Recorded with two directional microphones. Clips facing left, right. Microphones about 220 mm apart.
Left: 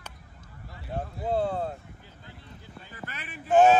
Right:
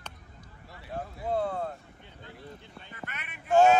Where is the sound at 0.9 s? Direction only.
25° left (ahead or behind).